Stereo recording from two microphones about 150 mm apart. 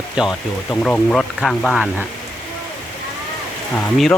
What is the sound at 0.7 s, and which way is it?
Speech, 10° left (ahead or behind).